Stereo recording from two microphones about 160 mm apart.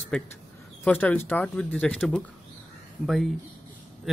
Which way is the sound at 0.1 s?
5° left (ahead or behind).